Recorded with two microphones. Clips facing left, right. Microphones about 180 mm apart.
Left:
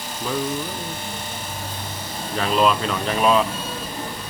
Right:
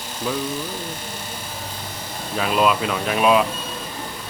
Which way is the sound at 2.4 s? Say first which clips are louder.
Even; 5° right (ahead or behind).